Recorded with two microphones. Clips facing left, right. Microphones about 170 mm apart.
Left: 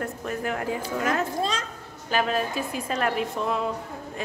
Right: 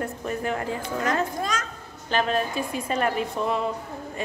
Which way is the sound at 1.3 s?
30° left (ahead or behind).